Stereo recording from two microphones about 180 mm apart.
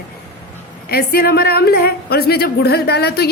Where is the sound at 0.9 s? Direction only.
60° left (ahead or behind).